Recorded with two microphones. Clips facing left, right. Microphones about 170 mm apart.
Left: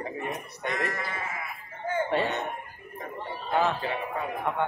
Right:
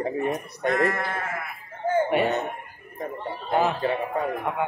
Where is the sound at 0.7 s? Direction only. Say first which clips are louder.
Right 7 dB; 60° right (ahead or behind).